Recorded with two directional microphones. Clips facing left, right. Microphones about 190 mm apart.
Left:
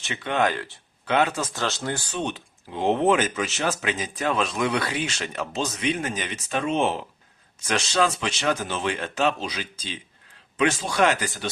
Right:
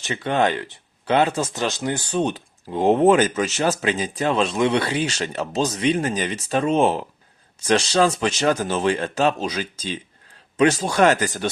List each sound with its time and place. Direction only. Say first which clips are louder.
0.0 s speech: right 3 dB; 35° right (ahead or behind)
0.5 s speech: right 4 dB; 20° right (ahead or behind)
1.0 s speech: right 4 dB; 30° right (ahead or behind)
1.5 s speech: right 4 dB; 15° right (ahead or behind)
2.0 s speech: right 7 dB; 40° right (ahead or behind)